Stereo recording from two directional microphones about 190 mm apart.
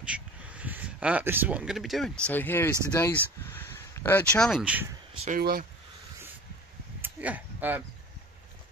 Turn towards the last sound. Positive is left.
turn(degrees=-10)  # may be behind; listen again after turning